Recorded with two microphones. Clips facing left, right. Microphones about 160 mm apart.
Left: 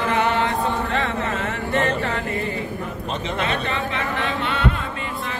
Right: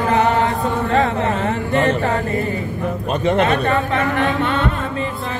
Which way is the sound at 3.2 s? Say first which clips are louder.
Right 10 dB; 50° right (ahead or behind).